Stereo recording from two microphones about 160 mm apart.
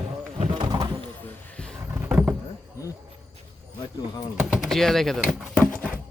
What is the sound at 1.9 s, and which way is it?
Vehicle, 10° right (ahead or behind).